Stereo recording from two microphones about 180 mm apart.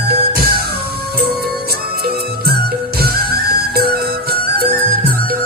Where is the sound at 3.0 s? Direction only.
60° right (ahead or behind).